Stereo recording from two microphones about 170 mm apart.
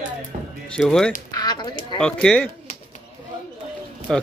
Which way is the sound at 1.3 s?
25° left (ahead or behind).